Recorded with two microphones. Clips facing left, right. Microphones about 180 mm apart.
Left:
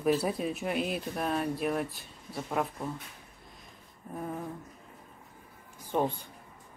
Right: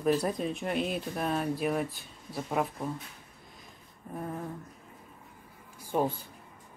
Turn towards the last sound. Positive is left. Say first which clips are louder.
# even
turn(degrees=-5)  # may be behind; listen again after turning